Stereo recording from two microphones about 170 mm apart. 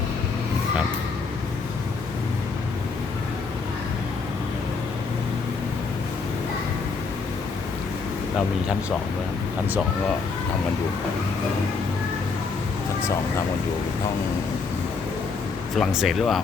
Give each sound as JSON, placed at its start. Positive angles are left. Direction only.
{"t": 15.7, "sound": "speech", "side_deg": 0}